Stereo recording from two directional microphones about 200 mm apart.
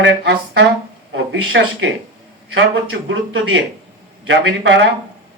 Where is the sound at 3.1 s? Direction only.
75° right (ahead or behind).